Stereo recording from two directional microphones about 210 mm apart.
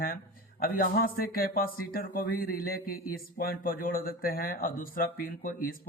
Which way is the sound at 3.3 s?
40° left (ahead or behind).